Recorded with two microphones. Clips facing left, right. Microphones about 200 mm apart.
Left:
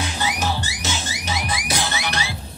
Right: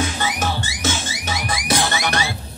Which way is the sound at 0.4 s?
50° right (ahead or behind).